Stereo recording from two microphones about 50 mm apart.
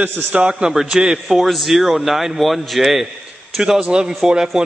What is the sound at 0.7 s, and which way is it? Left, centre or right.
A man's voice, centre.